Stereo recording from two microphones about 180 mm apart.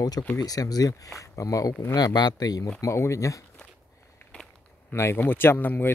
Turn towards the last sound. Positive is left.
turn(degrees=10)  # may be behind; listen again after turning